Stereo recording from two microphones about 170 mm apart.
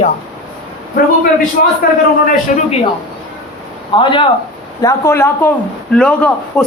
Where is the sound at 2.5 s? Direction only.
45° left (ahead or behind).